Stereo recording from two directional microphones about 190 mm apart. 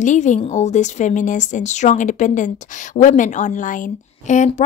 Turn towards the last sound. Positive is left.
turn(degrees=40)  # may be behind; listen again after turning